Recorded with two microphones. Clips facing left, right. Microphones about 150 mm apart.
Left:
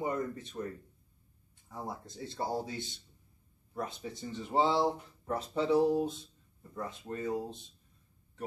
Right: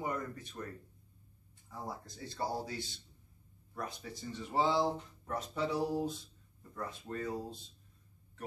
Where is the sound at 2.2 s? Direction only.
20° left (ahead or behind).